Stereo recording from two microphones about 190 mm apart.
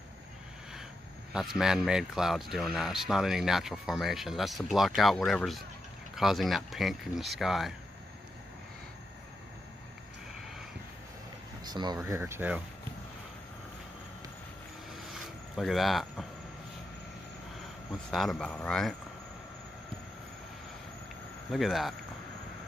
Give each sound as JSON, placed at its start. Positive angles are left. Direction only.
{"t": 1.3, "sound": "speech", "side_deg": 0}
{"t": 11.6, "sound": "speech", "side_deg": -20}
{"t": 15.1, "sound": "cricket", "side_deg": 0}
{"t": 18.1, "sound": "speech", "side_deg": 0}
{"t": 21.5, "sound": "speech", "side_deg": 0}